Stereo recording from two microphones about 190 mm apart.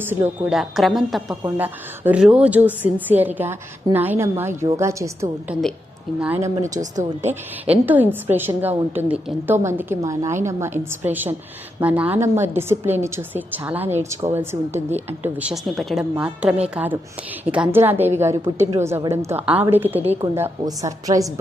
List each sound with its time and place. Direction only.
0.0 s a woman's voice: 10° right (ahead or behind)
1.4 s a woman's voice: 10° right (ahead or behind)
7.0 s a woman's voice: 35° right (ahead or behind)
7.7 s a woman's voice: 10° right (ahead or behind)
18.4 s a woman's voice: 35° right (ahead or behind)
18.7 s a woman's voice: 15° right (ahead or behind)